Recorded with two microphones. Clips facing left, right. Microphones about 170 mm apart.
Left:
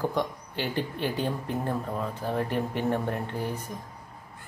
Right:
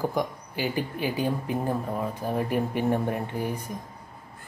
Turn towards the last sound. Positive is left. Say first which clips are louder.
# right 2 dB
turn(degrees=-10)  # may be behind; listen again after turning